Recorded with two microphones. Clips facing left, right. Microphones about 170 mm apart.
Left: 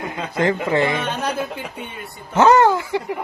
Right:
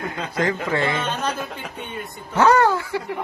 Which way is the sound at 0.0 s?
25° left (ahead or behind).